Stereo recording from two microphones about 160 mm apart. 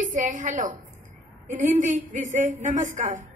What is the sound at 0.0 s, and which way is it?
A woman's voice, 55° right (ahead or behind).